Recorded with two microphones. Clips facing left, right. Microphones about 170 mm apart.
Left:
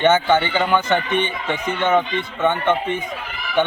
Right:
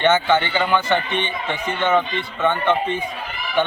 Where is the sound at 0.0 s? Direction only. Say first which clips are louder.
Left 1 dB; 15° left (ahead or behind).